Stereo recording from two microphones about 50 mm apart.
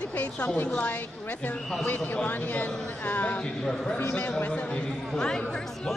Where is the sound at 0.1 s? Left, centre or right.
Left.